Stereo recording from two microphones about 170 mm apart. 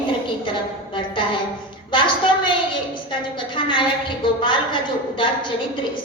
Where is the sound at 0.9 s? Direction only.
30° left (ahead or behind).